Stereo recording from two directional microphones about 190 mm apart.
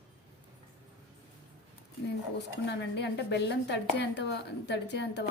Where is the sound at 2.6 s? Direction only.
65° left (ahead or behind).